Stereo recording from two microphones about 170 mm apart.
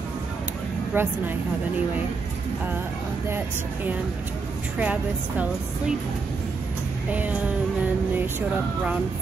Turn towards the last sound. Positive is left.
turn(degrees=-10)  # may be behind; listen again after turning